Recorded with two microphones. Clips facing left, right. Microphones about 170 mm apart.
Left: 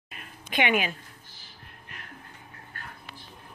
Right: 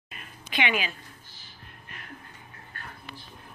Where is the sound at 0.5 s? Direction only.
50° left (ahead or behind).